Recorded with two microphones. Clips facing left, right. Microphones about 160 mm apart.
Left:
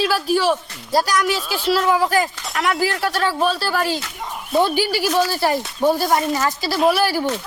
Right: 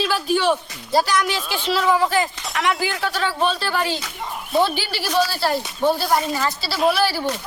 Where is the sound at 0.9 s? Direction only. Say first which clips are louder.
Left 1 dB; 5° left (ahead or behind).